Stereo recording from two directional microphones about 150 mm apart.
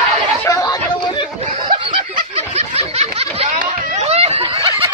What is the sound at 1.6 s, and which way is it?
Snicker, 35° right (ahead or behind).